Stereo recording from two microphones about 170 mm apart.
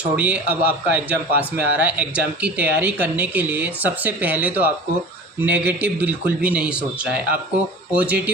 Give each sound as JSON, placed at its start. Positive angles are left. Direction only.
{"t": 0.0, "sound": "a man's voice", "side_deg": -10}